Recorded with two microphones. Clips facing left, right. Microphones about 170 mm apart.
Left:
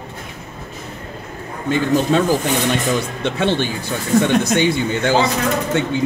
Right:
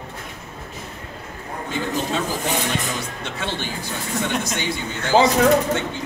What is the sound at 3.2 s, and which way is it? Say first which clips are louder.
A man's voice: left 11 dB; 70° left (ahead or behind).